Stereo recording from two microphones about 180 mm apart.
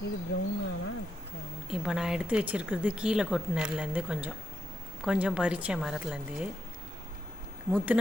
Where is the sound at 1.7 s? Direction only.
5° right (ahead or behind).